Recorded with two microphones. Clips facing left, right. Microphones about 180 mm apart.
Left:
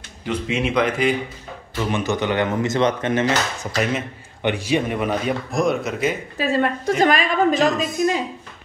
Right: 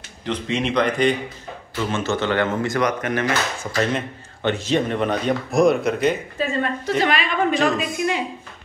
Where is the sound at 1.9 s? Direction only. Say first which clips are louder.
Left 1 dB; 15° left (ahead or behind).